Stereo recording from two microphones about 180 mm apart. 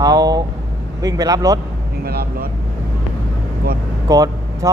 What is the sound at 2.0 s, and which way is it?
Vehicle, 60° right (ahead or behind).